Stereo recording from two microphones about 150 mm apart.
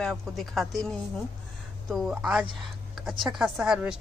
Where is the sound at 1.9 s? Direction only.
Centre (ahead or behind).